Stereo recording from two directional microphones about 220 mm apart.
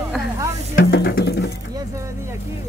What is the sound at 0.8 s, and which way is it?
Music, 45° left (ahead or behind).